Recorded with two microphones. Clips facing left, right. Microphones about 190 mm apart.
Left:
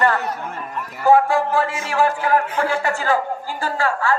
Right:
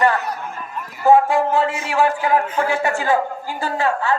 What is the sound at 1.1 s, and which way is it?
A woman's voice, 20° right (ahead or behind).